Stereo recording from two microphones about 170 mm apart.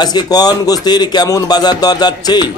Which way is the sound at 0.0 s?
25° left (ahead or behind).